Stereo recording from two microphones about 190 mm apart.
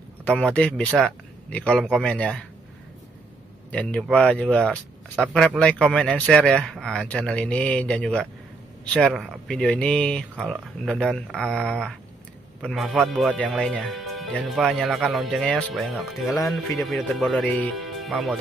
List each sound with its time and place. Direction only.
0.2 s speech: 5° left (ahead or behind)
3.7 s speech: 5° left (ahead or behind)